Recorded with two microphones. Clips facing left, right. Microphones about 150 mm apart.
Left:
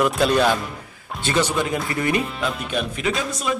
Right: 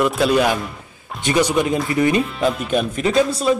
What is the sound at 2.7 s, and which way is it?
Speech, 40° right (ahead or behind).